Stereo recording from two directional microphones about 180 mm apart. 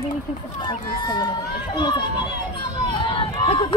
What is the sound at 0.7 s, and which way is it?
Speech, 25° left (ahead or behind).